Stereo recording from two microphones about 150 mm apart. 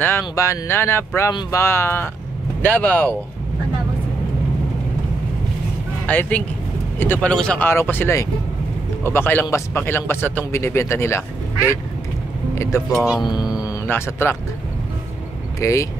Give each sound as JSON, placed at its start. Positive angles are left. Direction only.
{"t": 0.0, "sound": "speech", "side_deg": 15}
{"t": 6.0, "sound": "speech", "side_deg": 10}
{"t": 12.9, "sound": "speech", "side_deg": -5}
{"t": 13.2, "sound": "speech", "side_deg": 30}
{"t": 13.8, "sound": "speech", "side_deg": 15}
{"t": 15.6, "sound": "speech", "side_deg": 20}